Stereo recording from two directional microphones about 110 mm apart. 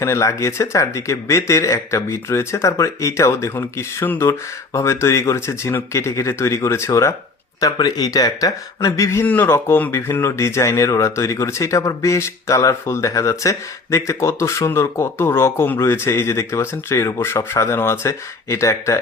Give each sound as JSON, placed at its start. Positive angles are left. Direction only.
{"t": 0.0, "sound": "speech", "side_deg": 25}